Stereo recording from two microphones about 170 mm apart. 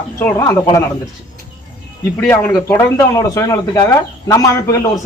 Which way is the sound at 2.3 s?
15° left (ahead or behind).